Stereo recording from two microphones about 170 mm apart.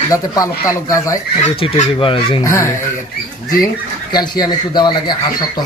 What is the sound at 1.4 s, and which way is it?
A man's voice, 40° left (ahead or behind).